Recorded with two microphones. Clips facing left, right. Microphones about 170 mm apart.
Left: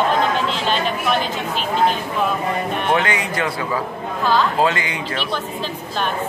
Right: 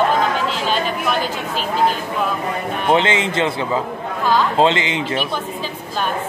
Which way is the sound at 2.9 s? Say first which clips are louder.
Right 5 dB; 25° right (ahead or behind).